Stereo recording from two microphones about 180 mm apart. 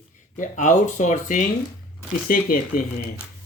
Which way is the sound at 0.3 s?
45° left (ahead or behind).